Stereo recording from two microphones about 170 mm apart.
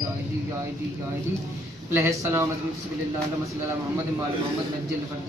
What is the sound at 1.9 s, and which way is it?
Speech, 15° right (ahead or behind).